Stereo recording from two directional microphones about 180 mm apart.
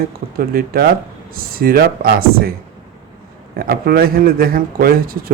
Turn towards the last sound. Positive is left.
turn(degrees=-55)  # may be behind; listen again after turning